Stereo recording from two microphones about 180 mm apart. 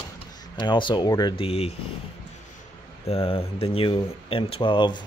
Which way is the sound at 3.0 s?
35° left (ahead or behind).